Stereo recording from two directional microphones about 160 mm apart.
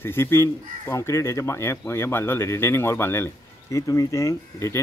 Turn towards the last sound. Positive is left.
turn(degrees=20)  # may be behind; listen again after turning